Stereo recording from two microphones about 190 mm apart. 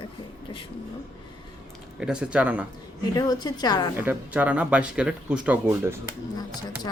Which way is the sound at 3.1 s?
20° left (ahead or behind).